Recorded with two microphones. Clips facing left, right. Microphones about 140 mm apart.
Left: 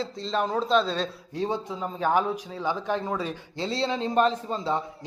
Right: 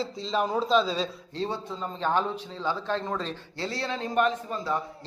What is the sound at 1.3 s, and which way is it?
A man's voice, 15° left (ahead or behind).